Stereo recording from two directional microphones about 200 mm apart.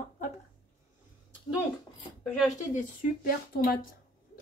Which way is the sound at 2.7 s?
45° left (ahead or behind).